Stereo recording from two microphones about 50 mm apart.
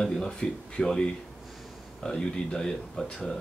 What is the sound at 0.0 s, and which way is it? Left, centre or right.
Speech, centre.